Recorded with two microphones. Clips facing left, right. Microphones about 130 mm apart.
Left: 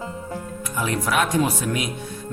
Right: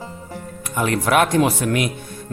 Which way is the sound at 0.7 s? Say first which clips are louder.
Right 5 dB; 60° right (ahead or behind).